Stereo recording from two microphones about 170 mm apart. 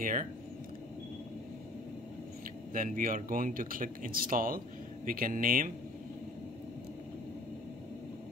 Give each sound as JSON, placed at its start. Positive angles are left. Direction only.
{"t": 0.0, "sound": "speech", "side_deg": -50}
{"t": 2.7, "sound": "speech", "side_deg": -55}